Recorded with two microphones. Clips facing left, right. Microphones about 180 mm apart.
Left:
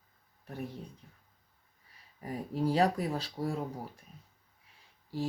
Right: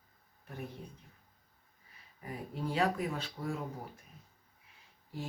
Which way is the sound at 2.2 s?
35° left (ahead or behind).